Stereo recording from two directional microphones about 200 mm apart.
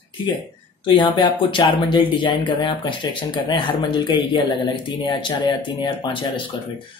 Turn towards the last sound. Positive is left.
turn(degrees=25)  # may be behind; listen again after turning